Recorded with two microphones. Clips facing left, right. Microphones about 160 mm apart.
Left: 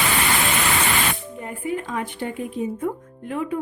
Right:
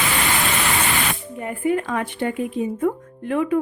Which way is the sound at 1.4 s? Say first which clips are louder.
Right 9 dB; 65° right (ahead or behind).